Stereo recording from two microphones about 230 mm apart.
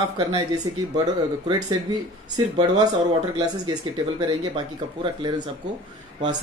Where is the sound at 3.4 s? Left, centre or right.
Centre.